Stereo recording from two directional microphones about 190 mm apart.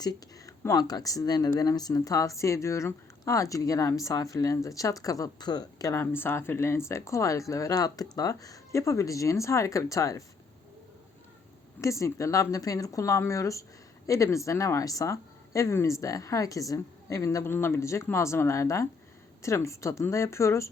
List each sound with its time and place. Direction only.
0.0 s speech: 20° left (ahead or behind)
11.8 s speech: 15° left (ahead or behind)